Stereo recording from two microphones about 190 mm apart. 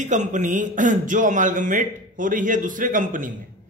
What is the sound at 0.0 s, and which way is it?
A man's voice, 40° right (ahead or behind).